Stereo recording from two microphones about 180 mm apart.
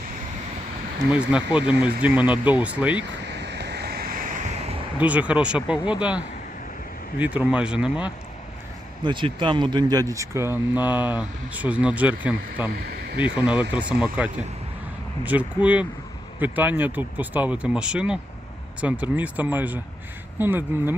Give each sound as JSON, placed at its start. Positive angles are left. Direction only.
{"t": 1.1, "sound": "speech", "side_deg": -5}
{"t": 3.0, "sound": "waves", "side_deg": -75}
{"t": 4.9, "sound": "speech", "side_deg": -5}
{"t": 9.0, "sound": "speech", "side_deg": -25}